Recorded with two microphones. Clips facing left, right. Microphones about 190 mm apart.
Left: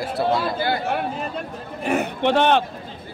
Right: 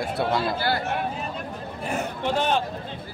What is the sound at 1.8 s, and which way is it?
Speech, 70° left (ahead or behind).